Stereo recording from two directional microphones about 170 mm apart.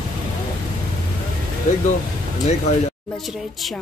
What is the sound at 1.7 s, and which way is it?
Speech, 45° left (ahead or behind).